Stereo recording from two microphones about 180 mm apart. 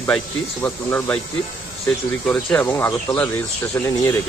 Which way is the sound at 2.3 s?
5° left (ahead or behind).